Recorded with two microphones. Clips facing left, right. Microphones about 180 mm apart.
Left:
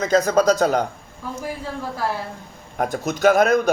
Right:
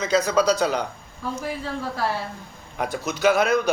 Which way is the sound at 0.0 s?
50° left (ahead or behind).